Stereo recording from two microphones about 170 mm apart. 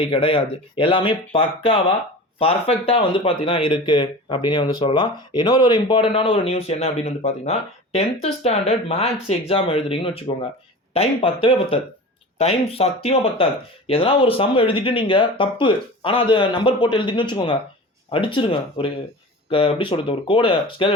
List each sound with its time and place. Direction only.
0.0 s speech: 30° left (ahead or behind)